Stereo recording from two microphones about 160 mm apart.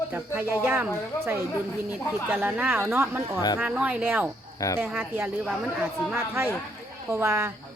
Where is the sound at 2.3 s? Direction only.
10° right (ahead or behind).